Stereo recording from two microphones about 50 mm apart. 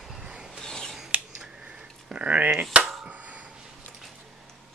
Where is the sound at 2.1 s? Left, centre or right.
Right.